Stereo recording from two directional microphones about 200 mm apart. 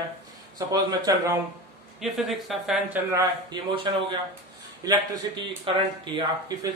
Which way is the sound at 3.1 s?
25° right (ahead or behind).